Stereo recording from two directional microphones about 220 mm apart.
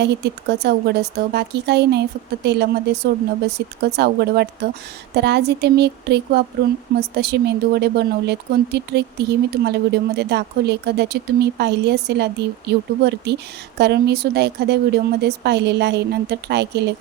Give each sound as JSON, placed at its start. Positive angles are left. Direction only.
{"t": 0.0, "sound": "speech", "side_deg": -50}